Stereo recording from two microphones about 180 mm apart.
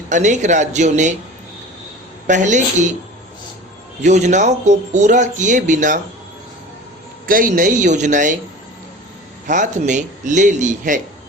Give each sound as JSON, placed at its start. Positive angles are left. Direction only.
{"t": 0.1, "sound": "a man's voice", "side_deg": -40}
{"t": 2.2, "sound": "a man's voice", "side_deg": -45}
{"t": 4.0, "sound": "a man's voice", "side_deg": -40}
{"t": 7.3, "sound": "a man's voice", "side_deg": -50}
{"t": 9.5, "sound": "a man's voice", "side_deg": -45}